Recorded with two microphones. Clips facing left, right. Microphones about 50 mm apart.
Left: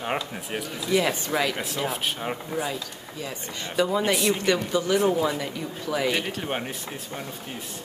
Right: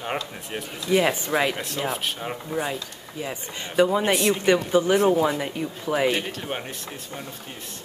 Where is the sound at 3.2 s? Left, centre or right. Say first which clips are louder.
Right 2 dB; right.